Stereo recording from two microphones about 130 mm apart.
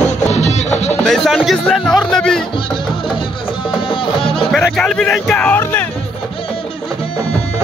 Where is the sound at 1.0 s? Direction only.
Centre (ahead or behind).